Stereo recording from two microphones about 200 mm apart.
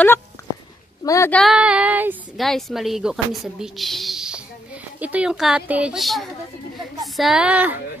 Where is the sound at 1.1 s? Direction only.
10° left (ahead or behind); by 7.7 s 5° right (ahead or behind).